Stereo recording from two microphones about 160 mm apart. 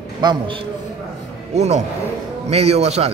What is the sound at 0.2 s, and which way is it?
Speech, 30° right (ahead or behind).